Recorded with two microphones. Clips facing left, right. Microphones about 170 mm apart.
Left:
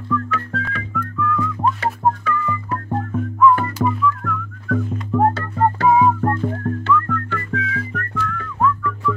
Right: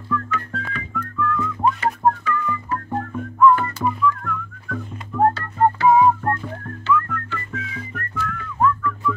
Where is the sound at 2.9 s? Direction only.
Centre (ahead or behind).